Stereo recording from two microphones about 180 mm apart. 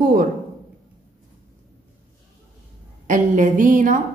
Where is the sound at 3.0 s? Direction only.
45° right (ahead or behind).